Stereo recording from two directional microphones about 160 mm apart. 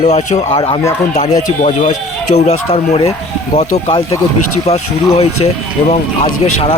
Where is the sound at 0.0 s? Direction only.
50° left (ahead or behind).